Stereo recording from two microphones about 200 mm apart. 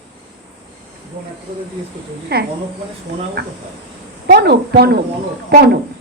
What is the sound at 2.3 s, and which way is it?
A woman's voice, 55° right (ahead or behind).